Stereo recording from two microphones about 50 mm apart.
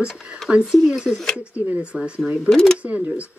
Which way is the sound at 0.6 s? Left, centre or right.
Centre.